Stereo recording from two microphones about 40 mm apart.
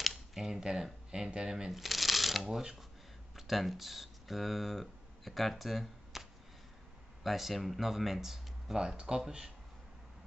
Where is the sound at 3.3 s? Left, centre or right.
Centre.